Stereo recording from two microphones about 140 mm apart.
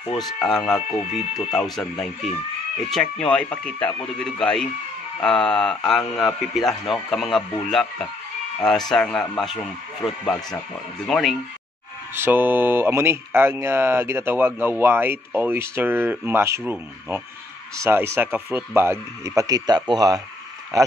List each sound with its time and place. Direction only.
0.0 s speech: 40° left (ahead or behind)
0.4 s speech: 5° left (ahead or behind)
8.5 s speech: 5° left (ahead or behind)
12.1 s speech: 15° right (ahead or behind)
17.8 s speech: 20° right (ahead or behind)